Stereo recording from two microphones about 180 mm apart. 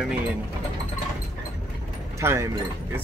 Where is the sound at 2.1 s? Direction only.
15° right (ahead or behind).